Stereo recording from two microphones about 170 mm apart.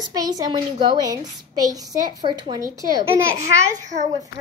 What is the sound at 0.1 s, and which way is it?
A child's voice, 20° right (ahead or behind).